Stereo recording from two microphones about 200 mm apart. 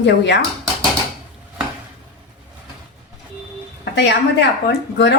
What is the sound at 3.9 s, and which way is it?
Speech, 65° left (ahead or behind).